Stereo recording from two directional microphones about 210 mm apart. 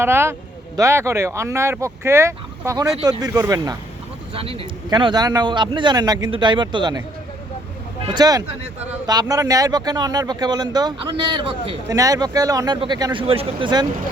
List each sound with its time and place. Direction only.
0.0 s speech: 10° right (ahead or behind)
8.0 s speech: 20° right (ahead or behind)